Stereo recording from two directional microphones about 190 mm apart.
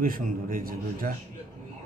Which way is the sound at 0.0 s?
45° right (ahead or behind).